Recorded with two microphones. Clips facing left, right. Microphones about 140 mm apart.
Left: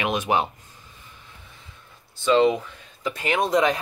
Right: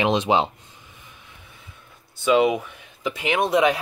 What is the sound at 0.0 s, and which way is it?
Speech, 25° right (ahead or behind).